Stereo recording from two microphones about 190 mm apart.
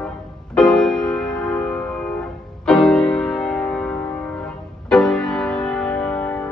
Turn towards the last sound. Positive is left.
turn(degrees=5)  # may be behind; listen again after turning